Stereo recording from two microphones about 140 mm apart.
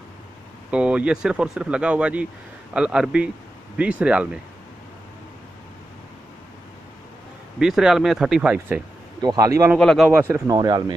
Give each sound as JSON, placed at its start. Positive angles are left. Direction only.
{"t": 0.7, "sound": "speech", "side_deg": -10}
{"t": 7.5, "sound": "speech", "side_deg": -5}
{"t": 9.2, "sound": "speech", "side_deg": -25}
{"t": 9.8, "sound": "speech", "side_deg": 5}
{"t": 10.0, "sound": "speech", "side_deg": -15}